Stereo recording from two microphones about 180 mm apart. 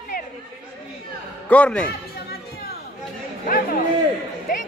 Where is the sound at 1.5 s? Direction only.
5° left (ahead or behind).